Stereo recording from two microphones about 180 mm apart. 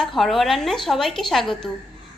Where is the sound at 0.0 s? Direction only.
Centre (ahead or behind).